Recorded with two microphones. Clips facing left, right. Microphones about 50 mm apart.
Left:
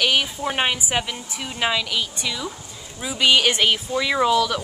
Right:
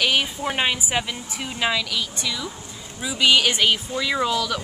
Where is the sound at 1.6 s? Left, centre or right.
Centre.